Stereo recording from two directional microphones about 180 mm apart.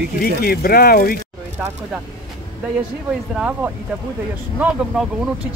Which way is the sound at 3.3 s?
5° right (ahead or behind).